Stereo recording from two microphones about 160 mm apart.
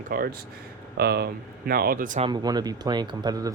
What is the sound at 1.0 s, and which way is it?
Speech, 90° right.